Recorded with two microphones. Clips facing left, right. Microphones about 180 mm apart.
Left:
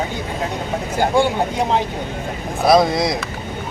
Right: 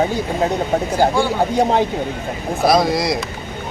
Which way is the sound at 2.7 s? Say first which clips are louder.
Left 2 dB; centre (ahead or behind).